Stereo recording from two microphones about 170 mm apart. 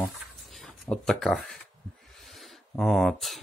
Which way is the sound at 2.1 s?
Centre (ahead or behind).